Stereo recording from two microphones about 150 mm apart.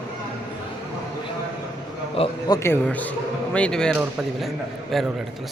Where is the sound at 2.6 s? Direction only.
15° left (ahead or behind).